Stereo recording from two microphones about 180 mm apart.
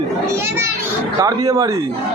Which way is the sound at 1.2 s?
20° right (ahead or behind).